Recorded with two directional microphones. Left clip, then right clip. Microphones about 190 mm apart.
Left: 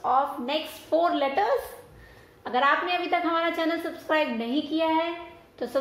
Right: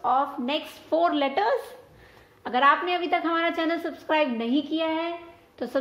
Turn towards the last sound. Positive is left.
turn(degrees=-55)  # may be behind; listen again after turning